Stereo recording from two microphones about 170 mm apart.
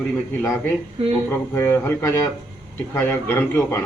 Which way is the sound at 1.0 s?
35° right (ahead or behind).